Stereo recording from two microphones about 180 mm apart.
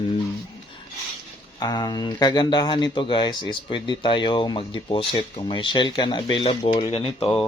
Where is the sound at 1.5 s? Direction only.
20° left (ahead or behind).